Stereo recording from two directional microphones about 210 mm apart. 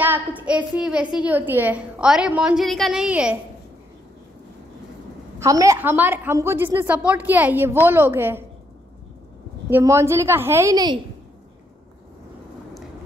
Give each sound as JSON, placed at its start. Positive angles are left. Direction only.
{"t": 0.0, "sound": "a woman's voice", "side_deg": -10}
{"t": 5.4, "sound": "a woman's voice", "side_deg": -15}
{"t": 9.7, "sound": "a woman's voice", "side_deg": -10}